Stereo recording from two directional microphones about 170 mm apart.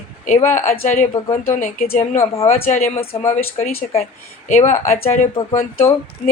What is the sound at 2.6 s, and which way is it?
Speech, 45° left (ahead or behind).